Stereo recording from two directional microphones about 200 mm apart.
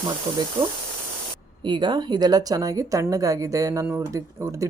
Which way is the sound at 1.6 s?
20° right (ahead or behind).